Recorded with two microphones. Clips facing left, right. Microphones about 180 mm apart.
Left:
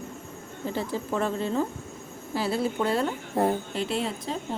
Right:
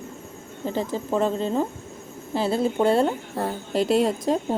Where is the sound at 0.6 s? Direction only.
20° right (ahead or behind).